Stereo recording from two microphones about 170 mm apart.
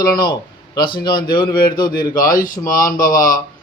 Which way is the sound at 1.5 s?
60° left (ahead or behind).